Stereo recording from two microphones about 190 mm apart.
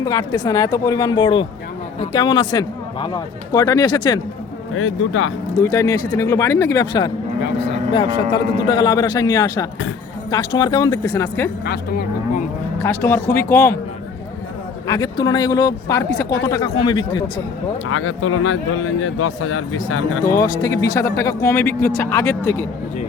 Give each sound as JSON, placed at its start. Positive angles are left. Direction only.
{"t": 0.0, "sound": "speech", "side_deg": 20}
{"t": 4.7, "sound": "speech", "side_deg": 90}
{"t": 5.5, "sound": "speech", "side_deg": 15}
{"t": 7.4, "sound": "speech", "side_deg": 65}
{"t": 8.6, "sound": "speech", "side_deg": 20}
{"t": 11.6, "sound": "speech", "side_deg": 55}
{"t": 12.8, "sound": "speech", "side_deg": 15}
{"t": 14.8, "sound": "speech", "side_deg": 20}
{"t": 17.9, "sound": "speech", "side_deg": 90}
{"t": 20.2, "sound": "speech", "side_deg": 15}